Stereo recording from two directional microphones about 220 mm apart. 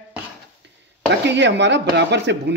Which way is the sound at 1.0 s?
55° right (ahead or behind).